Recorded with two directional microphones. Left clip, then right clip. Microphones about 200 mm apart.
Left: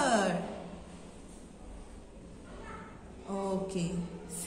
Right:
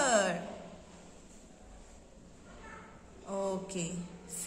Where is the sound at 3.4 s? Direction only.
35° right (ahead or behind).